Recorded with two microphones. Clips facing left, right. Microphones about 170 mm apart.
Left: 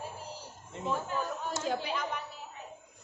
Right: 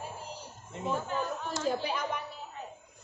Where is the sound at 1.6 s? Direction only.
45° right (ahead or behind).